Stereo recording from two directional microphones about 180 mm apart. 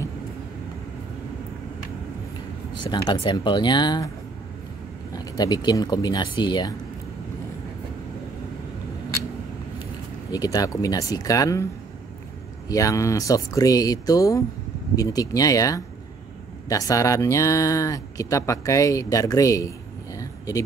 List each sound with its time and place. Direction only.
2.7 s speech: 25° left (ahead or behind)
5.1 s speech: 20° left (ahead or behind)
10.3 s speech: 20° left (ahead or behind)
12.6 s speech: 20° left (ahead or behind)
20.2 s a sound: 20° left (ahead or behind)